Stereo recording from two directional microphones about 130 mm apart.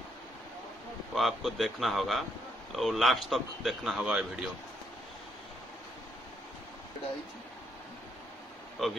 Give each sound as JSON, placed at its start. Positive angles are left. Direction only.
{"t": 1.1, "sound": "speech", "side_deg": 0}
{"t": 8.8, "sound": "speech", "side_deg": 0}